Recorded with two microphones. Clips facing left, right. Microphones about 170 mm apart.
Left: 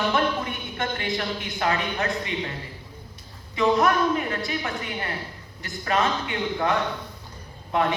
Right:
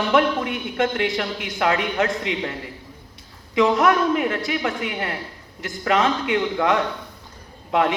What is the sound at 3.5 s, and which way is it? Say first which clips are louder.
A man's voice: right 3 dB; 75° right (ahead or behind).